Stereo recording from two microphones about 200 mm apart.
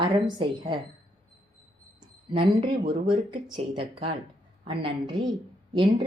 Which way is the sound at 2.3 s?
25° right (ahead or behind).